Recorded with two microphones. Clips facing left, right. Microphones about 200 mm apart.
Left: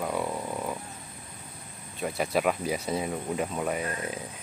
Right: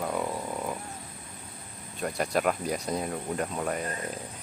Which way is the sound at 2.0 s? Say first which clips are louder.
Left 1 dB; centre (ahead or behind).